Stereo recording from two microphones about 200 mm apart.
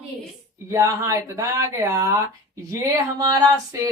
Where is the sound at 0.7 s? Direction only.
15° right (ahead or behind).